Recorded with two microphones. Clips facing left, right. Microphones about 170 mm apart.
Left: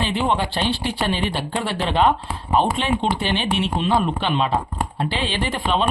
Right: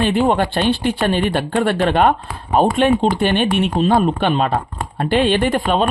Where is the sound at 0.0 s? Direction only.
50° right (ahead or behind).